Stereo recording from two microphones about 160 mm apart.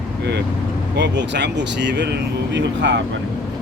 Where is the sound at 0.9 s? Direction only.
90° right.